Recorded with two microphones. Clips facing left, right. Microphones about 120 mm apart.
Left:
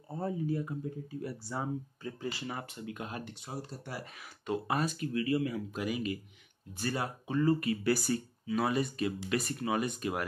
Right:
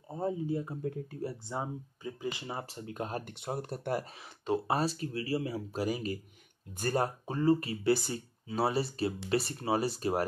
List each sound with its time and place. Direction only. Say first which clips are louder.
0.1 s speech: right 1 dB; 20° right (ahead or behind); by 3.3 s 40° right (ahead or behind)
3.3 s speech: right 5 dB; 55° right (ahead or behind)
4.0 s speech: right 1 dB; 30° right (ahead or behind)